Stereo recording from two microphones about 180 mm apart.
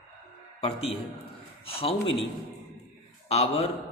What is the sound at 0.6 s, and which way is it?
A man's voice, 35° left (ahead or behind).